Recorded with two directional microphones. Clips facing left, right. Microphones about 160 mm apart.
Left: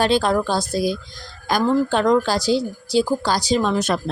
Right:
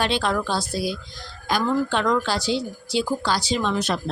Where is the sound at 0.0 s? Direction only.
40° left (ahead or behind).